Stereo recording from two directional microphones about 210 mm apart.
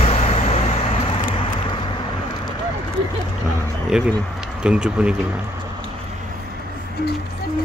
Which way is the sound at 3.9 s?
5° right (ahead or behind).